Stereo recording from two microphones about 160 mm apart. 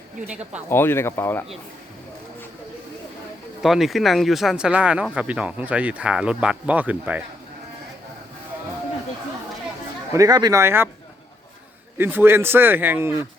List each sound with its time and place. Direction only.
0.7 s speech: 15° left (ahead or behind)
3.6 s speech: centre (ahead or behind)
10.1 s speech: 20° right (ahead or behind)
11.9 s speech: 15° right (ahead or behind)